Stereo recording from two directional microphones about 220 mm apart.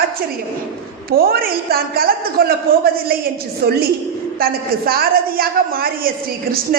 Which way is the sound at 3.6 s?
45° right (ahead or behind).